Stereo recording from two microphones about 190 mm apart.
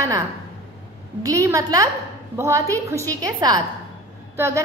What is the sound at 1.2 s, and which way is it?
A woman's voice, 15° right (ahead or behind).